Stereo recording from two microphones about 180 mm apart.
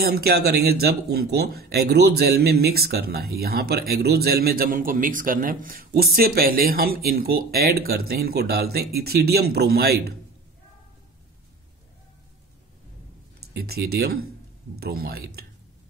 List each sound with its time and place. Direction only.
0.0 s speech: 60° right (ahead or behind)
13.5 s speech: 60° right (ahead or behind)